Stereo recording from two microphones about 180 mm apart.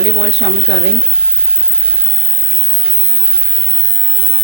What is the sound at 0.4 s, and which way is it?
Speech, 85° right.